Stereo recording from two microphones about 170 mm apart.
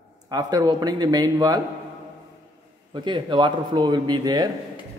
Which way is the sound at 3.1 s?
25° right (ahead or behind).